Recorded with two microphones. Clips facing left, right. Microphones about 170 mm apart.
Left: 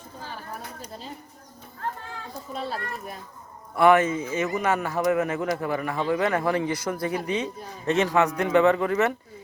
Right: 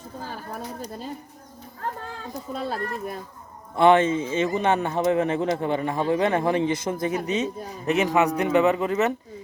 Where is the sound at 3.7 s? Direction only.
25° right (ahead or behind).